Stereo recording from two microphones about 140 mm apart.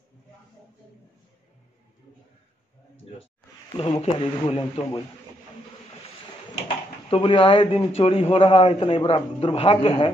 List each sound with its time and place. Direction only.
4.0 s a man's voice: 45° left (ahead or behind)
7.1 s a man's voice: 40° left (ahead or behind)